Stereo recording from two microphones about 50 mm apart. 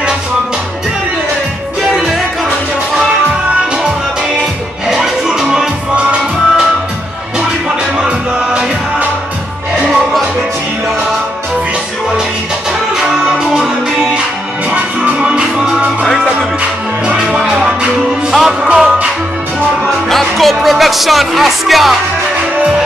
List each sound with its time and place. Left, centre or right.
4.8 s music: centre
5.9 s music: right
13.0 s music: centre
17.2 s music: centre
18.3 s music: centre
20.1 s music: centre